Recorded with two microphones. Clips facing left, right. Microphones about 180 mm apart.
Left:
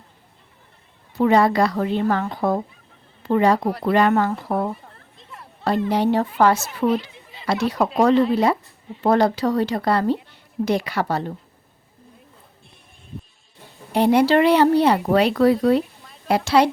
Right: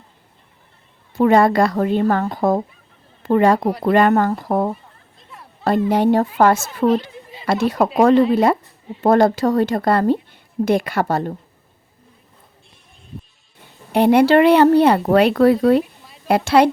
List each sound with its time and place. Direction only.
1.2 s speech: 50° right (ahead or behind)
13.9 s speech: 60° right (ahead or behind)